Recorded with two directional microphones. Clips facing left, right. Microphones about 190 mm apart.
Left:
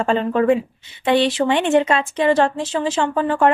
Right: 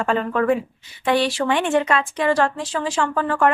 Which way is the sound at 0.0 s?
25° left (ahead or behind).